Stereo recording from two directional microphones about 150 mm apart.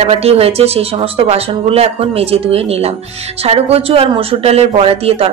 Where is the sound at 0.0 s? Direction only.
40° right (ahead or behind).